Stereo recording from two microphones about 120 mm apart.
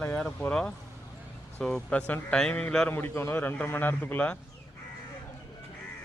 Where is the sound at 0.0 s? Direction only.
10° left (ahead or behind).